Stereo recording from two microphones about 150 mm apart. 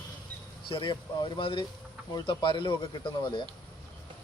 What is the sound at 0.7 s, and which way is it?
Speech, 35° left (ahead or behind).